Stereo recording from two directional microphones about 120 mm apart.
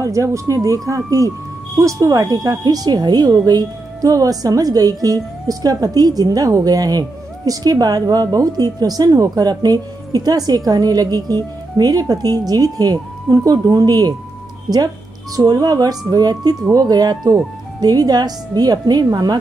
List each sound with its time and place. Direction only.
0.0 s speech: 25° right (ahead or behind)
15.3 s speech: 30° right (ahead or behind)